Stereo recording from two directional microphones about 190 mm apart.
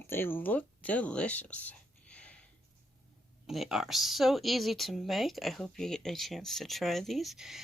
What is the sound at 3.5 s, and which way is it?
Speech, centre (ahead or behind).